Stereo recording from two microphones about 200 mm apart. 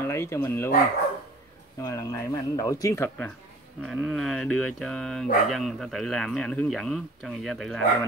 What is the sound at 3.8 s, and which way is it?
Speech, centre (ahead or behind).